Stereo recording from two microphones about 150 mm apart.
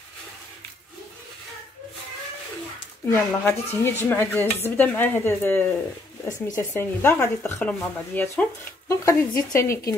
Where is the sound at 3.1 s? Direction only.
15° left (ahead or behind).